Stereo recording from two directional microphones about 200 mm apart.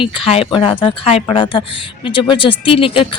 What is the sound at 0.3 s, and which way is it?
Speech, 30° left (ahead or behind).